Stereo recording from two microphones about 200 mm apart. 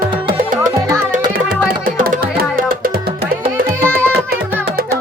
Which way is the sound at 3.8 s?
10° right (ahead or behind).